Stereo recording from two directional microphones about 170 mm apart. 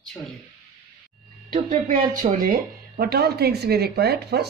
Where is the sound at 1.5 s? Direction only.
45° right (ahead or behind); by 4.4 s 70° right (ahead or behind).